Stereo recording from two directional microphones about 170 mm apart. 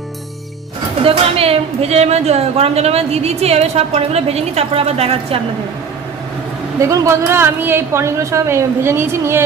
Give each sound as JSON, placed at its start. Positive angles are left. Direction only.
{"t": 1.0, "sound": "a woman's voice", "side_deg": -35}
{"t": 6.8, "sound": "a woman's voice", "side_deg": -20}